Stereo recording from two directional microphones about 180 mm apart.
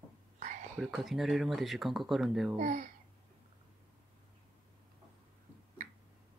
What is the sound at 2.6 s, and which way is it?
Speech, 45° right (ahead or behind).